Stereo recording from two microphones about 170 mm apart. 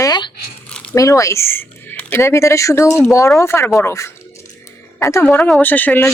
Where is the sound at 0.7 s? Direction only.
5° left (ahead or behind).